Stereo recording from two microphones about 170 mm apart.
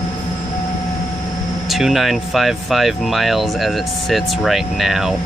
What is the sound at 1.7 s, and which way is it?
Speech, centre (ahead or behind).